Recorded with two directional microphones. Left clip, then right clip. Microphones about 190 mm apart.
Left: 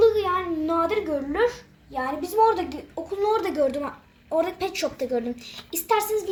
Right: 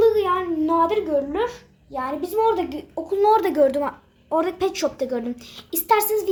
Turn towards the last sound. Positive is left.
turn(degrees=-35)  # may be behind; listen again after turning